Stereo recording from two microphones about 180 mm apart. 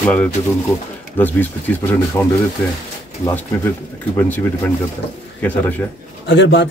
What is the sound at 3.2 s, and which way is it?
Speech, 10° left (ahead or behind).